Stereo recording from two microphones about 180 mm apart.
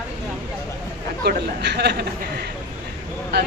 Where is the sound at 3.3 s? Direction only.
70° right (ahead or behind).